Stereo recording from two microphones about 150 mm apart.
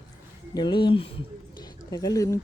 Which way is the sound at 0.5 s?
30° left (ahead or behind).